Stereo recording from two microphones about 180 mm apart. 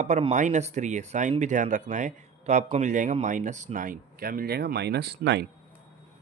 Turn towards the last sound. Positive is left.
turn(degrees=-70)  # may be behind; listen again after turning